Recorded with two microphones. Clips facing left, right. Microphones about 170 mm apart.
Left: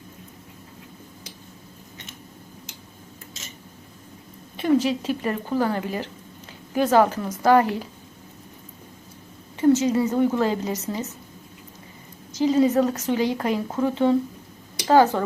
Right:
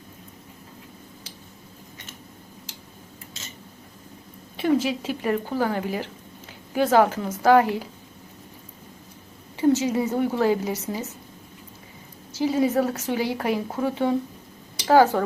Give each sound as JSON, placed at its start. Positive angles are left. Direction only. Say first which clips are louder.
{"t": 4.5, "sound": "speech", "louder": "left 2 dB", "side_deg": -10}
{"t": 9.6, "sound": "a woman's voice", "louder": "left 2 dB", "side_deg": -15}
{"t": 12.4, "sound": "speech", "louder": "left 3 dB", "side_deg": -10}